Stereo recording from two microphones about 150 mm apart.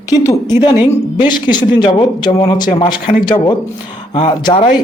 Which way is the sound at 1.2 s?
30° left (ahead or behind).